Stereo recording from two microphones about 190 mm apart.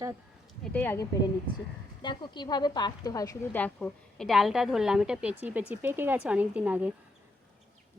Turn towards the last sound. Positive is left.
turn(degrees=-10)  # may be behind; listen again after turning